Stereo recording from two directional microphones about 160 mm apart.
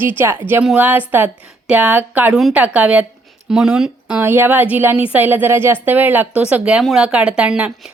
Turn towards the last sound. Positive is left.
turn(degrees=-5)  # may be behind; listen again after turning